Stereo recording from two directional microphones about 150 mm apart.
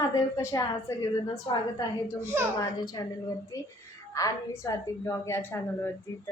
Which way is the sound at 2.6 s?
25° left (ahead or behind).